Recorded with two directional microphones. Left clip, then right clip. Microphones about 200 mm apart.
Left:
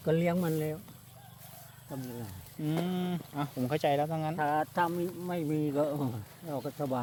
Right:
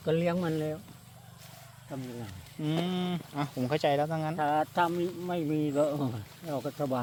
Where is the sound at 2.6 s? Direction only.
10° right (ahead or behind).